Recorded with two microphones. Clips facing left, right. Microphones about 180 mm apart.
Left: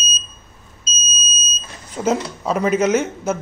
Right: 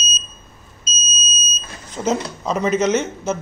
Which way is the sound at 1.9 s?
10° left (ahead or behind).